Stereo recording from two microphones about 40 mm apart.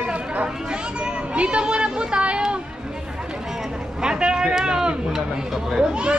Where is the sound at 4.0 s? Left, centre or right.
Right.